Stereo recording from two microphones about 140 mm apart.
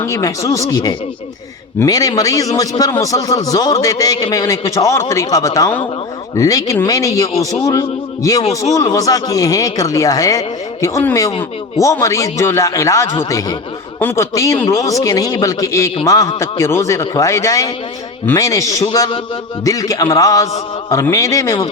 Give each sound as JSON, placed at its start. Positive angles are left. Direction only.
{"t": 0.0, "sound": "a man's voice", "side_deg": 20}
{"t": 18.9, "sound": "a sound", "side_deg": 35}
{"t": 19.6, "sound": "a man's voice", "side_deg": 25}